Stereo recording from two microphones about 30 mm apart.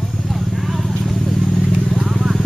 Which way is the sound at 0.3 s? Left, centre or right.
Centre.